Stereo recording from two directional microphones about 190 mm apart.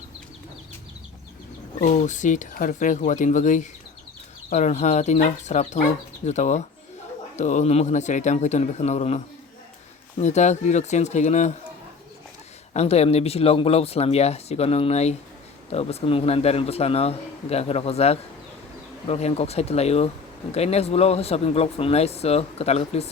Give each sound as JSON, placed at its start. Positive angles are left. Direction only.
{"t": 1.8, "sound": "speech", "side_deg": 40}
{"t": 12.7, "sound": "speech", "side_deg": 35}